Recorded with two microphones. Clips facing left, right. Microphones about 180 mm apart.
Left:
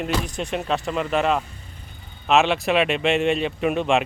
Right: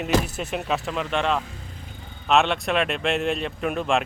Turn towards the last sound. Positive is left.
turn(degrees=0)  # may be behind; listen again after turning